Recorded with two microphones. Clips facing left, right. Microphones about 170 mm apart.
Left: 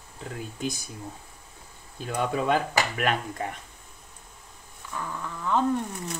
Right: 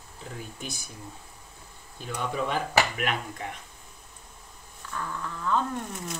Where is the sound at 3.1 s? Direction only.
45° left (ahead or behind).